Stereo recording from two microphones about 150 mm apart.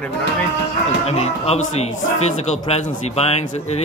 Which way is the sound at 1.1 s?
45° left (ahead or behind).